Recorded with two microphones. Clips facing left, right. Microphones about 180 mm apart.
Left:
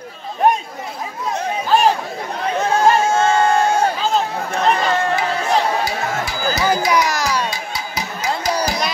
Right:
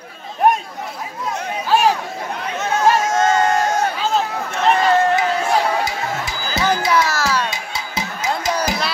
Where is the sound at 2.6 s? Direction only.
30° left (ahead or behind).